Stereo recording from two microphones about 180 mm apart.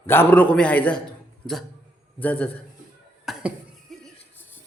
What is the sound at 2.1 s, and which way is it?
Speech, 10° left (ahead or behind).